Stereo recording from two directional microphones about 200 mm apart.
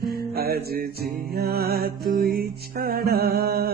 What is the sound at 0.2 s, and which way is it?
Mantra, 50° right (ahead or behind).